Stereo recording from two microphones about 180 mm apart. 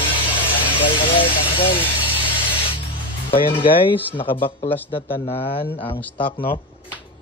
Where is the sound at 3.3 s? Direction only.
30° left (ahead or behind).